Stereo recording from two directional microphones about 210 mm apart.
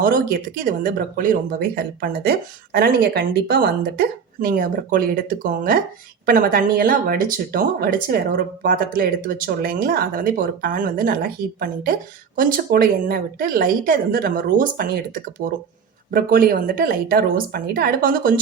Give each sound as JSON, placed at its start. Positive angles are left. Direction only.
{"t": 0.0, "sound": "speech", "side_deg": -45}